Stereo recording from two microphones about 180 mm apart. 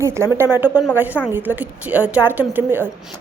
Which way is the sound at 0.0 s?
15° right (ahead or behind).